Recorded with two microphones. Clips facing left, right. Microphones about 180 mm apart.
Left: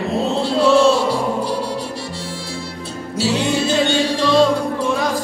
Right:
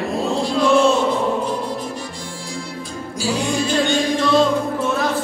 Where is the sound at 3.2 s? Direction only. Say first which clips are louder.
Left 3 dB; 70° left (ahead or behind).